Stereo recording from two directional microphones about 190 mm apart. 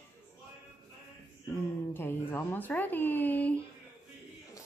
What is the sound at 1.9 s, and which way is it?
Speech, 10° left (ahead or behind).